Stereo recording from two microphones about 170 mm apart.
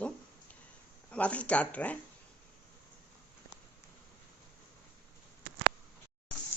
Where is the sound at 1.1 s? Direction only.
10° left (ahead or behind).